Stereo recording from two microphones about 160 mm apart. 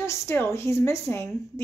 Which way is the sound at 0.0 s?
15° left (ahead or behind).